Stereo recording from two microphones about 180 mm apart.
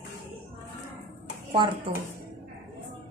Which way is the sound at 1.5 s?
25° right (ahead or behind).